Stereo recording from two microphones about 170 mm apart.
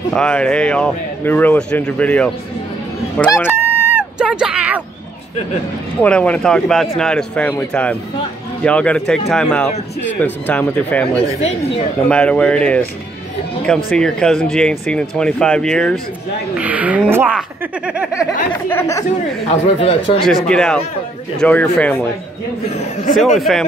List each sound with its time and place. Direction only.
0.1 s speech: 5° left (ahead or behind)
3.4 s a sound: 10° right (ahead or behind)
5.9 s speech: 5° left (ahead or behind)
11.4 s speech: 35° left (ahead or behind)
12.1 s speech: 5° left (ahead or behind)
13.9 s speech: 5° left (ahead or behind)
16.5 s a woman's voice: 10° right (ahead or behind)
18.7 s speech: 15° left (ahead or behind)
19.4 s speech: 35° left (ahead or behind)
20.2 s speech: 5° left (ahead or behind)
22.7 s speech: 40° left (ahead or behind)
23.3 s speech: centre (ahead or behind)